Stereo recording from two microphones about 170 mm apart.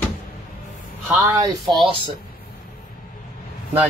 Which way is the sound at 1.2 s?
20° right (ahead or behind).